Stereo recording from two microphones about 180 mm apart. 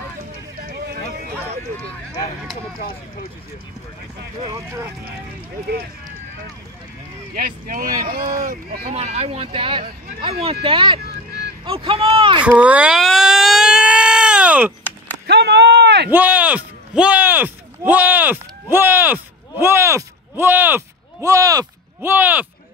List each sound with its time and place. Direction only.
0.6 s vehicle: 60° right (ahead or behind)
4.5 s speech: 15° right (ahead or behind)
7.3 s speech: 50° right (ahead or behind)
8.8 s speech: 35° right (ahead or behind)
12.4 s a sound: 10° right (ahead or behind)
15.2 s a sound: 65° right (ahead or behind)
16.1 s speech: 10° right (ahead or behind)